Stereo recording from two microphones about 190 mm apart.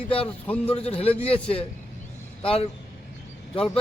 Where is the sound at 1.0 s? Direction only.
30° left (ahead or behind).